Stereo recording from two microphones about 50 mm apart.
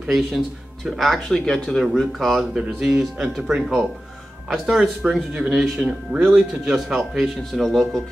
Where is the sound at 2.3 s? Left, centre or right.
Centre.